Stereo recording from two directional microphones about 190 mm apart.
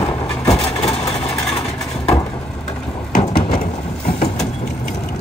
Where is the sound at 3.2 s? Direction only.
25° left (ahead or behind).